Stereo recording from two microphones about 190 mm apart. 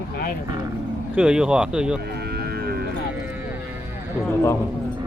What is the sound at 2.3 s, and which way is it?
Cattle, 55° right (ahead or behind).